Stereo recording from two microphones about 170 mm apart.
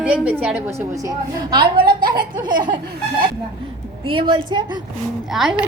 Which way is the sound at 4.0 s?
30° right (ahead or behind).